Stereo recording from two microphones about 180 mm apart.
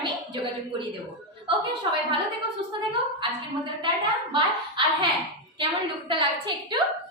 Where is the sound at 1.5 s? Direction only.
30° right (ahead or behind).